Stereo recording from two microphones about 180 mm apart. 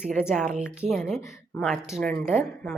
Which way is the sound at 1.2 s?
15° left (ahead or behind).